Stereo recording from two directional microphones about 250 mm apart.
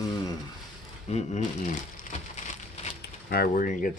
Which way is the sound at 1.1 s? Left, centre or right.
Left.